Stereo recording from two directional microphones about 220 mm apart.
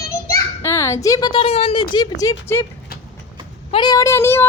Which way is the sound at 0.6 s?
15° left (ahead or behind).